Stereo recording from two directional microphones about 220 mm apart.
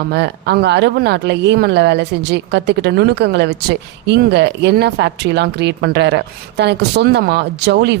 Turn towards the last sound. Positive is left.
turn(degrees=-50)  # may be behind; listen again after turning